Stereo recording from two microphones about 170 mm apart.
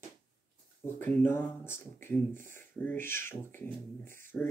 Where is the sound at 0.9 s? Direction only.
10° left (ahead or behind).